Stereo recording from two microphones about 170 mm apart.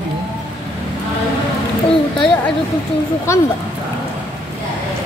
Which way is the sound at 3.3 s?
15° left (ahead or behind).